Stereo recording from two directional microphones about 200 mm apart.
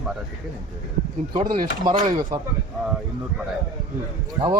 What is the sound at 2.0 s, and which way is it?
Speech, 40° right (ahead or behind).